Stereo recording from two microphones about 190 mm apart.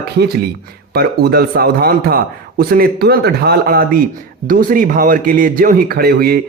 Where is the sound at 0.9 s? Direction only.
55° right (ahead or behind).